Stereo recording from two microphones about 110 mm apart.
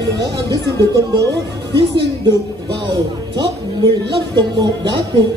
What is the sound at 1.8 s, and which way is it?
Speech, 45° right (ahead or behind).